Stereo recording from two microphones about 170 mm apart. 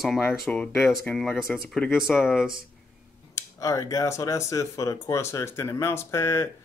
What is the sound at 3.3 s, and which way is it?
Speech, 20° left (ahead or behind).